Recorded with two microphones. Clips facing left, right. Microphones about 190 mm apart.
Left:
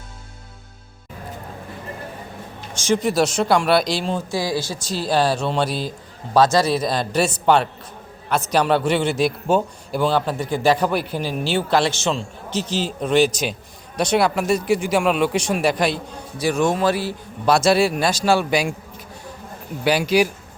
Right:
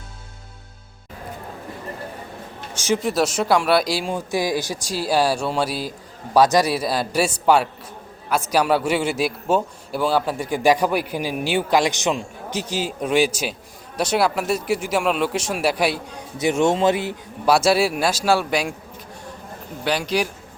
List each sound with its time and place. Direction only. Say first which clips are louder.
2.7 s a man's voice: left 2 dB; 10° right (ahead or behind)
16.4 s speech: right 1 dB; 25° right (ahead or behind)
17.4 s a man's voice: left 1 dB; 5° right (ahead or behind)
19.8 s a man's voice: left 5 dB; 5° left (ahead or behind)